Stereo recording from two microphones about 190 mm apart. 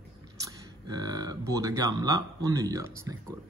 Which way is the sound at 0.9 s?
20° right (ahead or behind).